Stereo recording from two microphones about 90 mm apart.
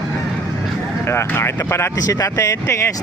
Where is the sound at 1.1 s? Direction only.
30° left (ahead or behind).